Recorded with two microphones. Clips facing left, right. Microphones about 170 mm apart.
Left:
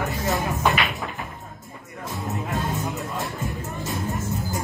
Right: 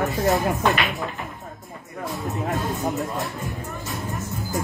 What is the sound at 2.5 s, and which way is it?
Music, centre (ahead or behind).